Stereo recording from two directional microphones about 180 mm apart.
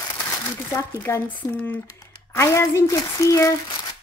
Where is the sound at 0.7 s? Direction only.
15° left (ahead or behind).